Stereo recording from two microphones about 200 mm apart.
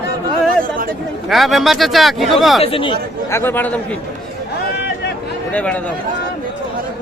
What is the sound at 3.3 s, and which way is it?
Speech, 10° left (ahead or behind).